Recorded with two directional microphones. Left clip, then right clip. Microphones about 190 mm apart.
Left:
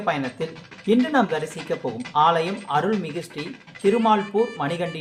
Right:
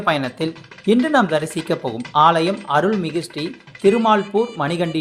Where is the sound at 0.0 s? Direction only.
45° right (ahead or behind).